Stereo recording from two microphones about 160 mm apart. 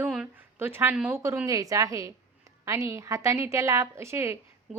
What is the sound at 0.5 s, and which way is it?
A woman's voice, 15° right (ahead or behind).